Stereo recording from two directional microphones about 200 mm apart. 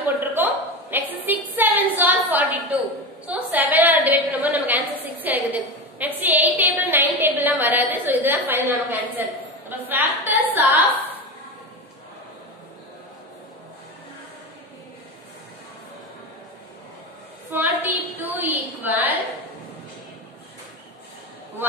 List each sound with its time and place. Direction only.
0.0 s a sound: 10° right (ahead or behind)
3.3 s a woman's voice: 10° right (ahead or behind)
17.5 s a woman's voice: 10° right (ahead or behind)